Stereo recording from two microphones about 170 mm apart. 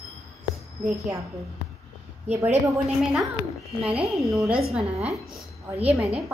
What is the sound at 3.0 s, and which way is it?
Speech, 5° right (ahead or behind).